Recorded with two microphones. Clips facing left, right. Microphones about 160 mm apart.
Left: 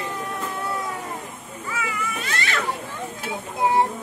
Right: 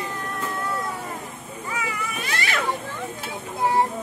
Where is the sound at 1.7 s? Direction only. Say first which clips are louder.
Left 1 dB; 15° right (ahead or behind).